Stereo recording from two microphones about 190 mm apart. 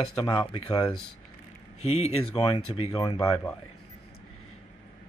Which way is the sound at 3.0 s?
20° left (ahead or behind).